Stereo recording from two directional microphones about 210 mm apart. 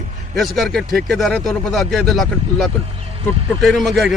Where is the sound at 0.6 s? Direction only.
Centre (ahead or behind).